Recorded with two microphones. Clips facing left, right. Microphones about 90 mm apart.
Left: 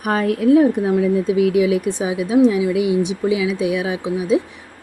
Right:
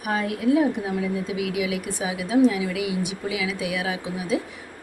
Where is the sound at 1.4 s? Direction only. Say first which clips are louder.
Left 11 dB; 35° left (ahead or behind).